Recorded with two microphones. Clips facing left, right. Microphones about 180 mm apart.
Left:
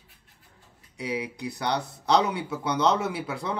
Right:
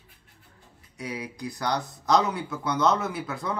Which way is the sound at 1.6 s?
30° left (ahead or behind).